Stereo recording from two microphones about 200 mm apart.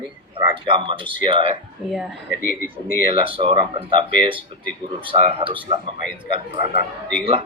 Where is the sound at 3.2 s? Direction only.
25° right (ahead or behind).